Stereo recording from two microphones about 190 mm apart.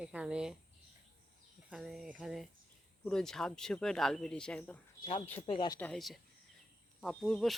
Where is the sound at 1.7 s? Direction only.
Centre (ahead or behind).